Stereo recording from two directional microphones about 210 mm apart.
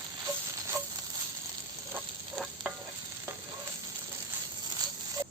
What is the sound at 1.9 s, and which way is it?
Frying, 5° right (ahead or behind).